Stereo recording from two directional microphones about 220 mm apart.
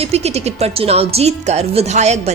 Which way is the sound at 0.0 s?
30° right (ahead or behind).